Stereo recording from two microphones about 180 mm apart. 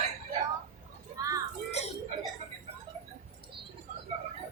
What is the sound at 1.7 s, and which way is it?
Chuckle, 35° left (ahead or behind).